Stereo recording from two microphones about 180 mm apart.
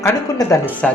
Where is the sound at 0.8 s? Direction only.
5° left (ahead or behind).